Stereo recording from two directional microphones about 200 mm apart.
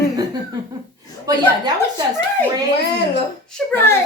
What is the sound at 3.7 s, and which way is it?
Speech, 10° left (ahead or behind).